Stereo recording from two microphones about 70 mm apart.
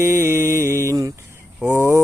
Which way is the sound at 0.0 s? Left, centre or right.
Right.